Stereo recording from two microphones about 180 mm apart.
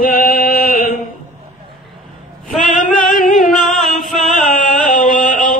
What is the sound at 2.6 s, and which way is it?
Singing, 45° left (ahead or behind).